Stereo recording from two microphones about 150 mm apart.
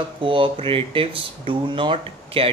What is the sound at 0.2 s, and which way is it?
Speech, 35° right (ahead or behind).